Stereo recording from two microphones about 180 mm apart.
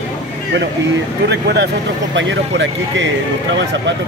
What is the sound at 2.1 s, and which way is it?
Speech, 85° right.